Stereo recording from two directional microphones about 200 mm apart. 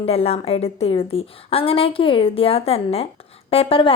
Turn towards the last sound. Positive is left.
turn(degrees=25)  # may be behind; listen again after turning